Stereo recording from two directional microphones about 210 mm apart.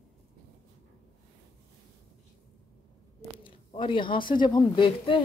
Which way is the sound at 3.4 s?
25° left (ahead or behind).